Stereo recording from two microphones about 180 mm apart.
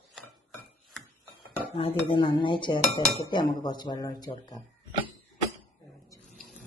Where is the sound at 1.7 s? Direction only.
30° left (ahead or behind).